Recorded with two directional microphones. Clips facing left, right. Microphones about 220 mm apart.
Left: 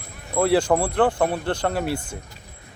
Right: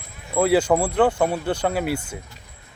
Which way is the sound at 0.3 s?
5° right (ahead or behind).